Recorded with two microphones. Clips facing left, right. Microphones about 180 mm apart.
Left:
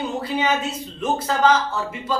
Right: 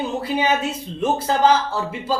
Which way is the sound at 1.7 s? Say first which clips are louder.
Right 2 dB; 30° right (ahead or behind).